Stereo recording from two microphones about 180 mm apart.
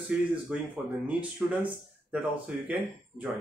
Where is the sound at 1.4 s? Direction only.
5° right (ahead or behind).